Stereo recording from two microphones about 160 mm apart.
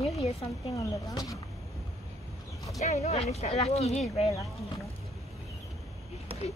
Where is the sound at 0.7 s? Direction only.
20° left (ahead or behind).